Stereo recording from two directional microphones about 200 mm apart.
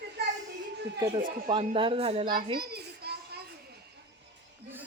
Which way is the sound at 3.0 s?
55° right (ahead or behind).